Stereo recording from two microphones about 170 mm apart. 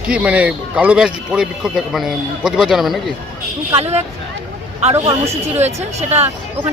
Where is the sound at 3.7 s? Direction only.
40° right (ahead or behind).